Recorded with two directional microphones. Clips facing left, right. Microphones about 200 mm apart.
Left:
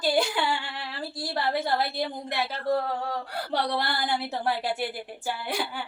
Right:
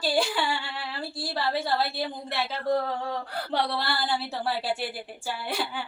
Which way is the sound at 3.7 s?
20° left (ahead or behind).